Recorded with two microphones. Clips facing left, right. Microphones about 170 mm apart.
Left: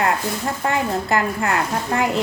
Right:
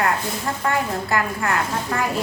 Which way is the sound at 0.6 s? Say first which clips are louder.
Left 2 dB; 25° left (ahead or behind).